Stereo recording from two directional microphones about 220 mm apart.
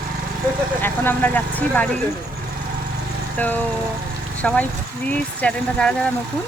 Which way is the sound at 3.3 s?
5° left (ahead or behind).